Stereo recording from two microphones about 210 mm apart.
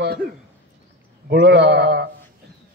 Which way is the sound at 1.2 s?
55° right (ahead or behind).